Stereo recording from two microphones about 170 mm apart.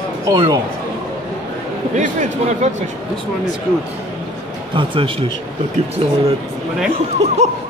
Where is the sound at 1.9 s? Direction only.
45° right (ahead or behind).